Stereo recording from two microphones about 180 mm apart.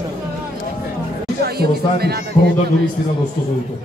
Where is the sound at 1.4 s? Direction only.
60° right (ahead or behind).